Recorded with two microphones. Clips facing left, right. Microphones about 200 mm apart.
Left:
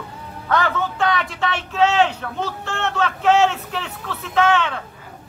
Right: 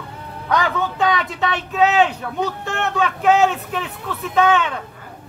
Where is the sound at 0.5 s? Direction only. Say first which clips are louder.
Right 1 dB; 15° right (ahead or behind).